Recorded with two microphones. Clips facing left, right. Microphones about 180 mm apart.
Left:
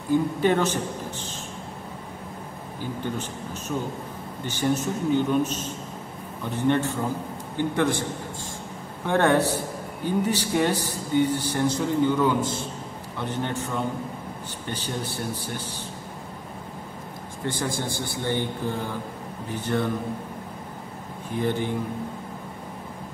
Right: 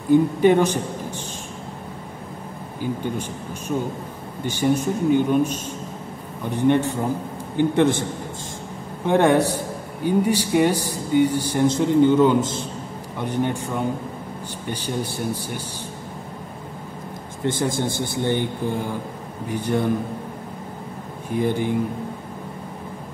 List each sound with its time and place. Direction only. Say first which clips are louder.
0.4 s speech: right 6 dB; 15° right (ahead or behind)
2.8 s a man's voice: right 4 dB; 15° right (ahead or behind)
9.0 s speech: right 4 dB; 15° right (ahead or behind)
17.5 s a man's voice: right 6 dB; 20° right (ahead or behind)
21.4 s speech: right 4 dB; 10° right (ahead or behind)